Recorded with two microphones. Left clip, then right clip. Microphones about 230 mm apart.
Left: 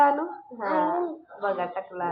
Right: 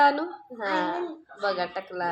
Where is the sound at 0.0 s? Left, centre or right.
Right.